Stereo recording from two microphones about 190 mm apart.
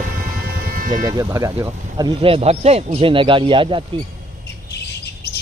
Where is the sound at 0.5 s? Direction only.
50° right (ahead or behind).